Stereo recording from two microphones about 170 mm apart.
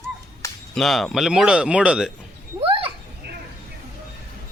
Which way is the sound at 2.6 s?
30° right (ahead or behind).